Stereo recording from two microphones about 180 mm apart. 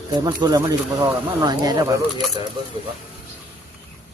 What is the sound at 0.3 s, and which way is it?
Speech, 20° right (ahead or behind).